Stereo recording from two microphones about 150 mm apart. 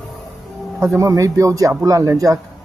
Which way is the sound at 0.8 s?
20° right (ahead or behind).